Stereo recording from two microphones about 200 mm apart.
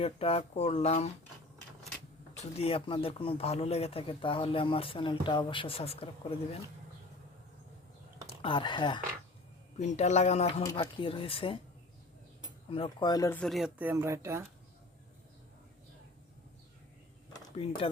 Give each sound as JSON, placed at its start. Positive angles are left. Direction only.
{"t": 0.0, "sound": "speech", "side_deg": 30}
{"t": 2.4, "sound": "speech", "side_deg": 30}
{"t": 8.3, "sound": "speech", "side_deg": 25}
{"t": 9.7, "sound": "speech", "side_deg": 35}
{"t": 10.6, "sound": "speech", "side_deg": 20}
{"t": 13.4, "sound": "speech", "side_deg": 0}
{"t": 17.6, "sound": "speech", "side_deg": 25}